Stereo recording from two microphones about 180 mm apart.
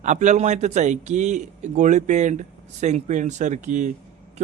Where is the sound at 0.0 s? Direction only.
40° right (ahead or behind).